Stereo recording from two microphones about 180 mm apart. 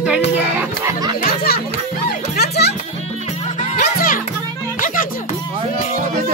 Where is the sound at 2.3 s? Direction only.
65° left (ahead or behind).